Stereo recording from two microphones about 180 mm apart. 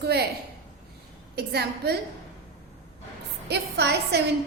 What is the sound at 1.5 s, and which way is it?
Speech, 65° right (ahead or behind).